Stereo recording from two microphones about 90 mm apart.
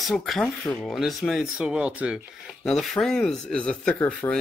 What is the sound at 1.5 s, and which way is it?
Speech, 15° right (ahead or behind).